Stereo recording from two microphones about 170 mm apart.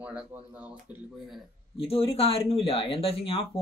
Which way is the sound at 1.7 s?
35° left (ahead or behind).